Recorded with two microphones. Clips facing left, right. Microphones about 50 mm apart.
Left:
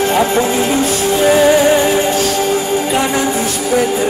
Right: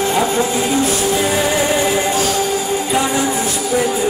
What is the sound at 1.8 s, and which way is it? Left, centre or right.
Music, left.